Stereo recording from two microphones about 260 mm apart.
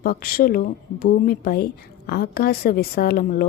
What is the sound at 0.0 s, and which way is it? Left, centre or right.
A woman's voice, left.